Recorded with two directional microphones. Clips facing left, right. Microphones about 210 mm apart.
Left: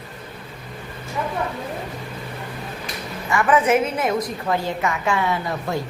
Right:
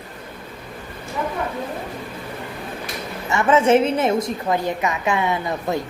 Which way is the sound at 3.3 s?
25° right (ahead or behind).